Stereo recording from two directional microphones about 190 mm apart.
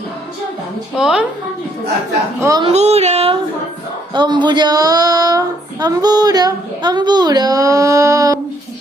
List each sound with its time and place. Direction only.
0.9 s a woman's voice: 5° right (ahead or behind)
2.4 s speech: 20° right (ahead or behind)
2.6 s a sound: 35° right (ahead or behind)
4.1 s speech: 25° right (ahead or behind)